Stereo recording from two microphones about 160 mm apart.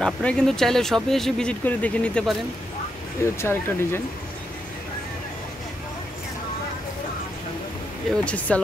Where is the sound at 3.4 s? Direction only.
15° left (ahead or behind).